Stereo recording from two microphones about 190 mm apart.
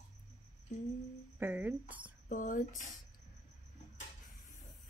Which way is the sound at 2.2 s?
45° left (ahead or behind).